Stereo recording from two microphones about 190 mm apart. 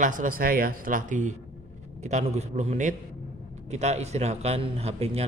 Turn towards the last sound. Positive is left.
turn(degrees=-30)  # may be behind; listen again after turning